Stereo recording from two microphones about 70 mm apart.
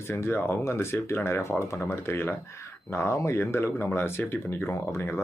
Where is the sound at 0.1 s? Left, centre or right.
Left.